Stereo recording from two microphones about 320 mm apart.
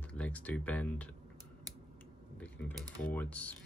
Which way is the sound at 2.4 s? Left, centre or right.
Centre.